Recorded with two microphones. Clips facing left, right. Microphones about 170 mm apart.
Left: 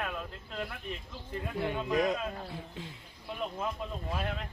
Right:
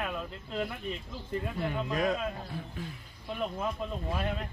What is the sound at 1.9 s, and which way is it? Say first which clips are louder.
A man's voice: left 1 dB; 15° left (ahead or behind).